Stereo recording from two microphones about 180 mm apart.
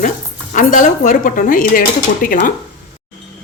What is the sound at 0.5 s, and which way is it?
Speech, 45° left (ahead or behind).